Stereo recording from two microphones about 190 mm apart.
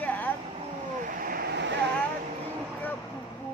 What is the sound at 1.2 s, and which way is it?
Vehicle, 50° right (ahead or behind).